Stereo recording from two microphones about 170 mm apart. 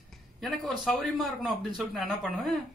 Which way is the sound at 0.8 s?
5° left (ahead or behind).